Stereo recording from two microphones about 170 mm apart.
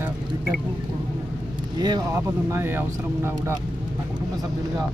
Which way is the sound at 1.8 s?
25° right (ahead or behind).